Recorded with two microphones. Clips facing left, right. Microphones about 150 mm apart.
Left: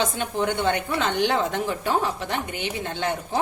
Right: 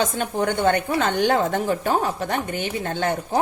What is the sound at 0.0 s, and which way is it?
Speech, 45° right (ahead or behind).